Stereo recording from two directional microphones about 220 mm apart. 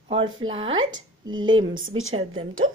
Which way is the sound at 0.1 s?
25° right (ahead or behind).